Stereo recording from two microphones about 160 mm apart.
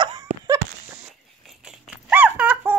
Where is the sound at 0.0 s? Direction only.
25° right (ahead or behind).